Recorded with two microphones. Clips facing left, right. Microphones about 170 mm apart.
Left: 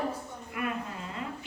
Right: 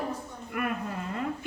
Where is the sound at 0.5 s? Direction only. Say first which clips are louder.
Right 2 dB; 55° right (ahead or behind).